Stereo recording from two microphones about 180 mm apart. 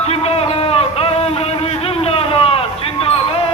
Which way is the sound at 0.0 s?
35° left (ahead or behind).